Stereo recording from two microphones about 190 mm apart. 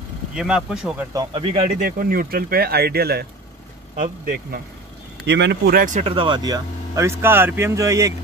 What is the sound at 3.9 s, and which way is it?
Speech, 45° right (ahead or behind).